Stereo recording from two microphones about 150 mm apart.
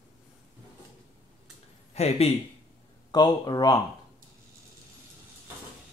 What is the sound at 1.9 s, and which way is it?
Speech, 45° left (ahead or behind).